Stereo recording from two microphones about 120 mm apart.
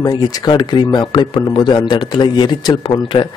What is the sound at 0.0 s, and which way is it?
A man's voice, 35° left (ahead or behind).